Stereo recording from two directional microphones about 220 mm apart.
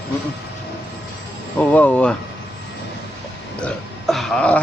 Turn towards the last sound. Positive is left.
turn(degrees=5)  # may be behind; listen again after turning